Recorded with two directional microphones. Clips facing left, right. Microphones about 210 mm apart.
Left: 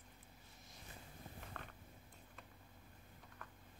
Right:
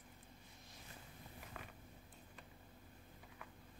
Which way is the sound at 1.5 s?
10° right (ahead or behind).